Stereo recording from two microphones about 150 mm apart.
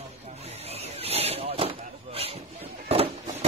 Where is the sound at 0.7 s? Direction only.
40° right (ahead or behind).